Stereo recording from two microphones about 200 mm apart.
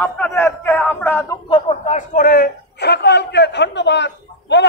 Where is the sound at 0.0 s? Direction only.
10° left (ahead or behind).